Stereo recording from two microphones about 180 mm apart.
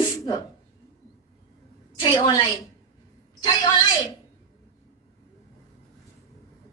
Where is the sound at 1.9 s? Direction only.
25° left (ahead or behind).